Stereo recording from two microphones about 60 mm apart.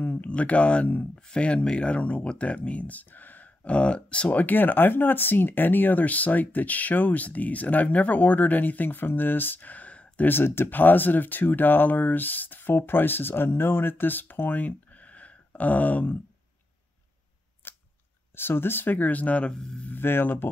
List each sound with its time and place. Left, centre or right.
0.0 s speech: left
10.3 s speech: left
17.6 s chewing: left
18.3 s speech: left